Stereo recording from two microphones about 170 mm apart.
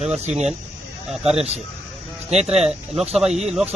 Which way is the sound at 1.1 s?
Centre (ahead or behind).